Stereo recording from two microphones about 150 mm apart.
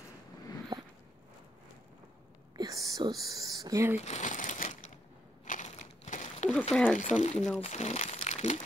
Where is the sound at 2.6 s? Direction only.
25° right (ahead or behind).